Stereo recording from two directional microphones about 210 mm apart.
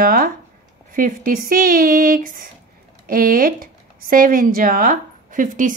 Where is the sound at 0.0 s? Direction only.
45° right (ahead or behind).